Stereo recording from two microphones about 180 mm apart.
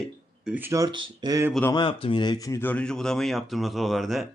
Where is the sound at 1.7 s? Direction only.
30° left (ahead or behind); by 4.3 s centre (ahead or behind).